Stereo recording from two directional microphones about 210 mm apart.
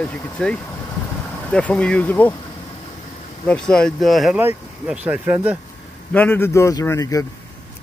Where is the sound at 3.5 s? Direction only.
5° left (ahead or behind).